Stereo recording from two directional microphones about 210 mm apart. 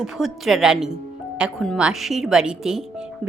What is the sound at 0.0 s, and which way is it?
Speech, centre (ahead or behind).